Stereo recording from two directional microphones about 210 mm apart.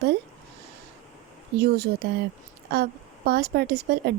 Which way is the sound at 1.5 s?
50° right (ahead or behind).